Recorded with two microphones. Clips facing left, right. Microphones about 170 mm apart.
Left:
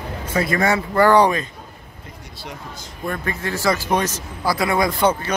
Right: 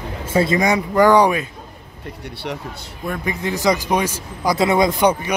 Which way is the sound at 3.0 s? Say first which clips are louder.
Right 2 dB; 10° right (ahead or behind).